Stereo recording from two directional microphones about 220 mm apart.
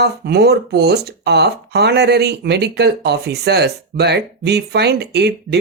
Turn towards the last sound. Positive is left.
turn(degrees=-50)  # may be behind; listen again after turning